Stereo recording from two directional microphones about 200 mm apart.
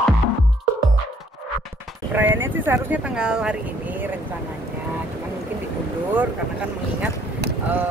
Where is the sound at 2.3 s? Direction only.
70° right (ahead or behind).